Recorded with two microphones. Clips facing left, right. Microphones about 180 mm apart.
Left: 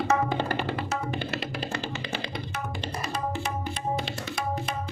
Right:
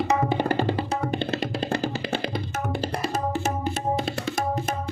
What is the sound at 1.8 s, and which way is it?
Music, 50° right (ahead or behind).